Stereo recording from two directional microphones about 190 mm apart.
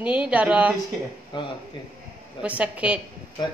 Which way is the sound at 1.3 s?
25° left (ahead or behind).